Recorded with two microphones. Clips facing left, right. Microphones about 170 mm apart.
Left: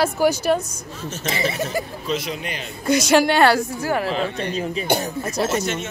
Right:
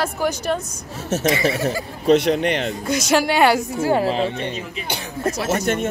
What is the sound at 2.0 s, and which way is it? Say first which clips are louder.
Speech: right 10 dB; 70° right (ahead or behind).